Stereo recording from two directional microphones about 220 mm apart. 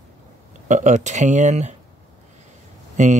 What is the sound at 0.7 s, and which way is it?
Speech, 35° right (ahead or behind).